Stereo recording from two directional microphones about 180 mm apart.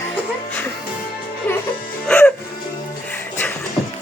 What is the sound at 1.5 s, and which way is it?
Music, 10° left (ahead or behind).